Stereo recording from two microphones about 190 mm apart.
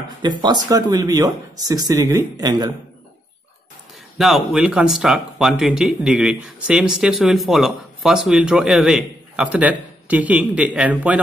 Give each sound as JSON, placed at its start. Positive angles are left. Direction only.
{"t": 0.2, "sound": "speech", "side_deg": -20}
{"t": 4.2, "sound": "speech", "side_deg": 0}